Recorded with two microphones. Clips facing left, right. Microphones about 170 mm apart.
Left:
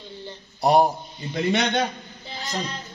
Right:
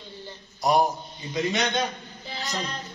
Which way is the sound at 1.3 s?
60° left (ahead or behind).